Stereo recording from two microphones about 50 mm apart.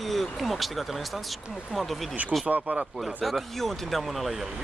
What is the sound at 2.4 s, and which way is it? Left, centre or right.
Speech, right.